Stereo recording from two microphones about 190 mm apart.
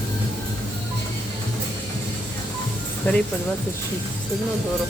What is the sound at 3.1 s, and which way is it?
Speech, 10° left (ahead or behind).